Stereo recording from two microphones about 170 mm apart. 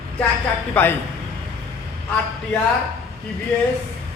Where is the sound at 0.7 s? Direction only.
10° left (ahead or behind).